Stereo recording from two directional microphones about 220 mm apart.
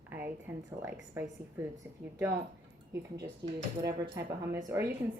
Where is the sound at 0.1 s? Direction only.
10° right (ahead or behind).